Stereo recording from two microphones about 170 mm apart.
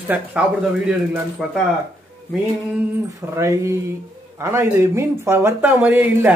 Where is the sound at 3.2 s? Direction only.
15° right (ahead or behind).